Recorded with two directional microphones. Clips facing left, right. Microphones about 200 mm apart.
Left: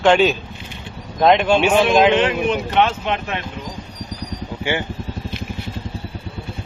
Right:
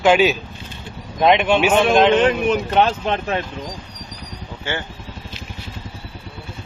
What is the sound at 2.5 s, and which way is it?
Speech, 35° right (ahead or behind).